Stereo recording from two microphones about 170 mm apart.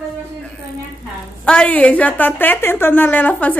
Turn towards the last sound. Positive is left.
turn(degrees=10)  # may be behind; listen again after turning